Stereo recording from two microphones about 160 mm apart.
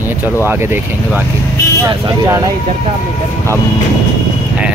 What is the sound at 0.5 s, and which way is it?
Speech, 15° right (ahead or behind).